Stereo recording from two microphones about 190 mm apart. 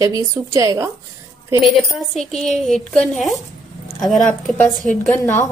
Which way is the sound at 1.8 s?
Centre (ahead or behind).